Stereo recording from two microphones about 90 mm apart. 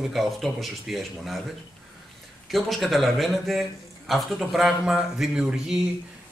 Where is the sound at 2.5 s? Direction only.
Centre (ahead or behind).